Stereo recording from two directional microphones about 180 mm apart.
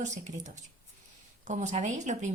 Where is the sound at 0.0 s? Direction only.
40° right (ahead or behind).